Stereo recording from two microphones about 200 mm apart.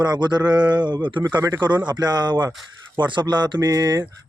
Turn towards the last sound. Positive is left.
turn(degrees=-15)  # may be behind; listen again after turning